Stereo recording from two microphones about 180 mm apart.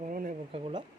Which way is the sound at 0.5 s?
30° right (ahead or behind).